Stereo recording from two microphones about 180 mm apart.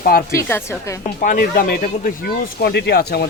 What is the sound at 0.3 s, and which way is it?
Speech, 15° left (ahead or behind).